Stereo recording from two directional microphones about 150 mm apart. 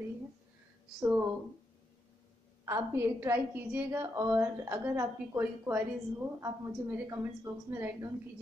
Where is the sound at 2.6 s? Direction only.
20° right (ahead or behind).